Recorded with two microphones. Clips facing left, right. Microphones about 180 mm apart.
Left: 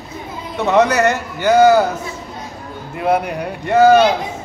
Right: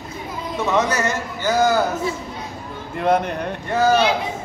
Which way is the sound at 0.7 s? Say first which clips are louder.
Left 7 dB; 65° left (ahead or behind).